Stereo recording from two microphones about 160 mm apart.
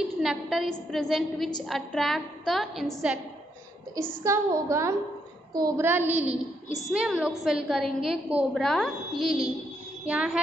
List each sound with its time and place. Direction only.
0.2 s a woman's voice: centre (ahead or behind)
4.2 s a woman's voice: 20° right (ahead or behind)
5.9 s a woman's voice: 10° right (ahead or behind)